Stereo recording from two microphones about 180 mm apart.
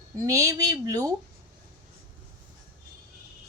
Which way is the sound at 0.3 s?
20° right (ahead or behind).